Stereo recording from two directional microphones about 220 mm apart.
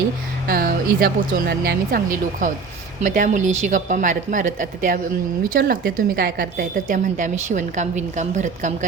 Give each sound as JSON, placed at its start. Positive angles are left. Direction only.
{"t": 0.4, "sound": "a woman's voice", "side_deg": -40}